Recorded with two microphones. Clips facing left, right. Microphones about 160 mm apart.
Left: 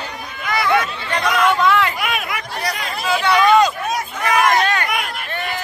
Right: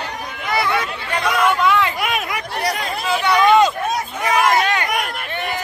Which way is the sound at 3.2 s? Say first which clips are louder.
Even; 20° right (ahead or behind).